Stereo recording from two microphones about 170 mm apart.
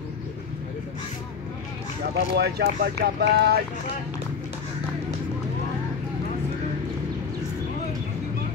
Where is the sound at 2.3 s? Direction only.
75° right (ahead or behind).